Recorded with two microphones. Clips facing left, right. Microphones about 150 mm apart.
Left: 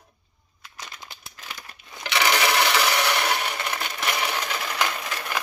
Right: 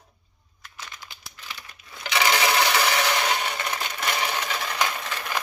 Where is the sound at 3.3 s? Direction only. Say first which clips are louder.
Even; 10° left (ahead or behind).